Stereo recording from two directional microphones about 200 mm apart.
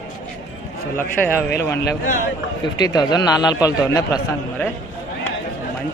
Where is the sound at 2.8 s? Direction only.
20° left (ahead or behind).